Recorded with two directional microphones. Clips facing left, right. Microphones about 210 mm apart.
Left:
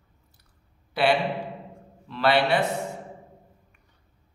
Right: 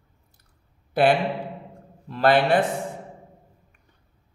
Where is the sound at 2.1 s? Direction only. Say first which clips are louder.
Right 3 dB; 45° right (ahead or behind).